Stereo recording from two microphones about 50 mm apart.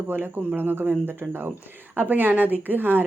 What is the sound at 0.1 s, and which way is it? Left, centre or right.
Speech, right.